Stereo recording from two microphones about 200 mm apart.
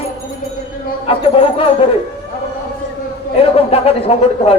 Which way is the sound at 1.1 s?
30° left (ahead or behind).